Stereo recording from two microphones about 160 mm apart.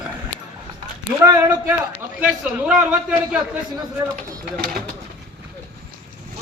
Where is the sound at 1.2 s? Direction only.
20° right (ahead or behind).